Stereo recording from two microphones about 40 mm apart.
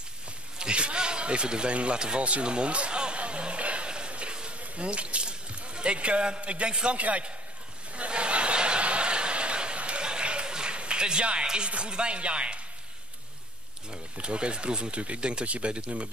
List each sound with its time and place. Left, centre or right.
0.6 s a sound: right
7.0 s a man's voice: right
7.9 s snicker: right
11.4 s speech: right
14.1 s speech: right